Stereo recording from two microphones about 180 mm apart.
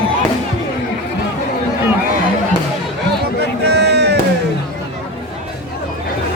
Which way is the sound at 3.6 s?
65° right (ahead or behind).